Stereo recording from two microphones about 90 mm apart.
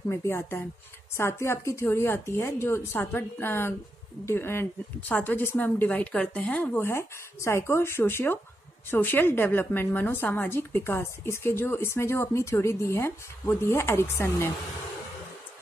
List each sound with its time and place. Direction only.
0.1 s a woman's voice: 30° left (ahead or behind)